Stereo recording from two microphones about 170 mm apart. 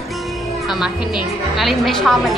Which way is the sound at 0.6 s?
5° right (ahead or behind).